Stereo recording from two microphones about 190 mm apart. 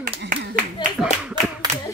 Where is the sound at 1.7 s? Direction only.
35° right (ahead or behind).